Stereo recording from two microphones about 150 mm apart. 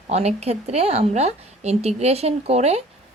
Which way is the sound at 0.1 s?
45° right (ahead or behind).